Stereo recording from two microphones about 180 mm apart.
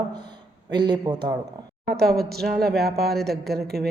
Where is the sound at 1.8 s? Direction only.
60° right (ahead or behind).